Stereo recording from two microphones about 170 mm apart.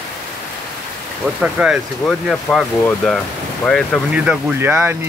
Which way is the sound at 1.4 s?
5° right (ahead or behind).